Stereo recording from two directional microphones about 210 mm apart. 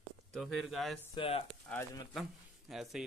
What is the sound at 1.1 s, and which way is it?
Speech, 25° left (ahead or behind).